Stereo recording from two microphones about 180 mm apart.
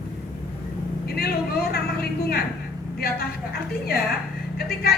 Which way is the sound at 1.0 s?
60° left (ahead or behind).